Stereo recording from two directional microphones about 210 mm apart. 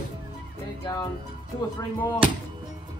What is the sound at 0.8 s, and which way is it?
Speech, 20° left (ahead or behind).